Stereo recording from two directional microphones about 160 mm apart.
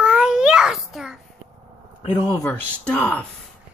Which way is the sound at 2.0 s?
30° left (ahead or behind).